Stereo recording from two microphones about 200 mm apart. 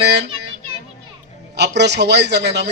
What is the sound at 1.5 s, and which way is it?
A man's voice, 60° right (ahead or behind).